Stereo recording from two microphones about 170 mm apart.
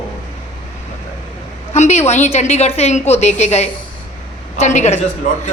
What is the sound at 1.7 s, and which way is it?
A woman's voice, 40° left (ahead or behind).